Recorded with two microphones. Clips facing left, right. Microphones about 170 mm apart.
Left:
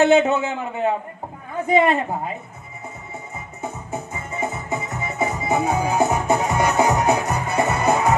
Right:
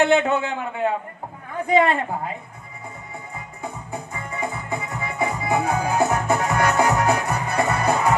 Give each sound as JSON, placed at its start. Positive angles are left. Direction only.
{"t": 0.0, "sound": "a man's voice", "side_deg": 20}
{"t": 1.6, "sound": "a man's voice", "side_deg": 20}
{"t": 3.9, "sound": "music", "side_deg": 20}